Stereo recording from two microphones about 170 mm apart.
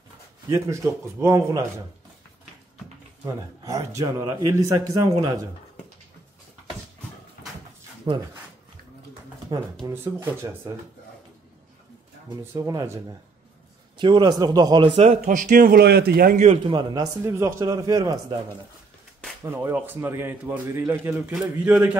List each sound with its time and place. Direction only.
0.5 s a man's voice: 15° right (ahead or behind)
3.6 s speech: 20° right (ahead or behind)
8.1 s speech: 25° right (ahead or behind)
9.5 s a man's voice: 20° right (ahead or behind)
12.5 s speech: 20° right (ahead or behind)
13.9 s speech: 25° right (ahead or behind)
15.2 s a man's voice: 50° right (ahead or behind)
16.3 s speech: 35° right (ahead or behind)
19.4 s a man's voice: 15° right (ahead or behind)